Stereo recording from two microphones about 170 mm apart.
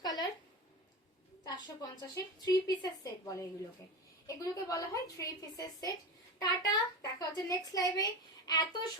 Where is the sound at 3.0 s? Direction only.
20° left (ahead or behind).